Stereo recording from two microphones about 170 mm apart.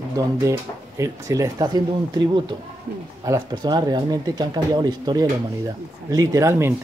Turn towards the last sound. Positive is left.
turn(degrees=-15)  # may be behind; listen again after turning